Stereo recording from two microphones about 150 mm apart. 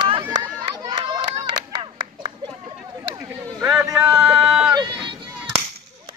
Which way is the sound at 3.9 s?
15° right (ahead or behind).